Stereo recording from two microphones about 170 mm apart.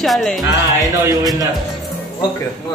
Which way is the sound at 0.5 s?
20° right (ahead or behind).